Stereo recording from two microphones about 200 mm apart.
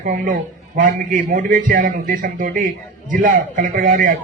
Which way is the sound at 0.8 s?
40° right (ahead or behind).